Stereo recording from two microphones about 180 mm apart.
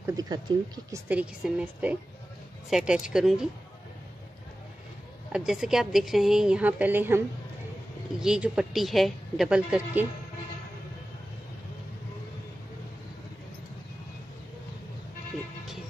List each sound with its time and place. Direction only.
0.0 s speech: 20° right (ahead or behind)
1.0 s a woman's voice: 5° right (ahead or behind)
5.3 s a woman's voice: 5° right (ahead or behind)